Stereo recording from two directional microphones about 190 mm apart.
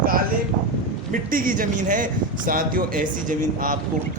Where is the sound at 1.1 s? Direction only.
45° right (ahead or behind).